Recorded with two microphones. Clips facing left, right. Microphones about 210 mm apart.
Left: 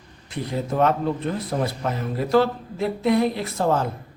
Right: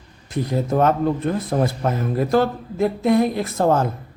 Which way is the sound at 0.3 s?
45° right (ahead or behind).